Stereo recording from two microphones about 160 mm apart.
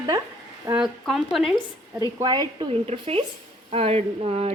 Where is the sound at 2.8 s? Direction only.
35° right (ahead or behind).